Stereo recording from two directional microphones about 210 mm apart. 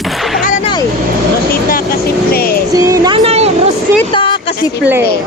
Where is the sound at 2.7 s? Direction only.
15° right (ahead or behind).